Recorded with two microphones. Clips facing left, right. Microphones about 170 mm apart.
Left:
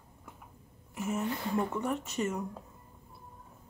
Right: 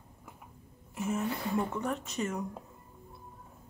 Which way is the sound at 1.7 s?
5° left (ahead or behind).